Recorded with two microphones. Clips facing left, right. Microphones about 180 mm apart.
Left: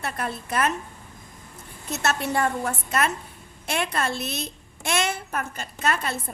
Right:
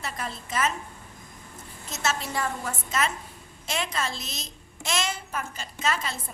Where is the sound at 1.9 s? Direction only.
65° left (ahead or behind).